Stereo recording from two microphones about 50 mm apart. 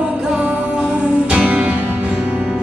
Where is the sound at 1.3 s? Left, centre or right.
Right.